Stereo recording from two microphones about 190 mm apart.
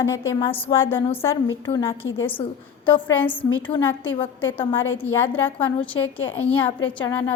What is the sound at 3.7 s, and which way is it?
Speech, 30° left (ahead or behind).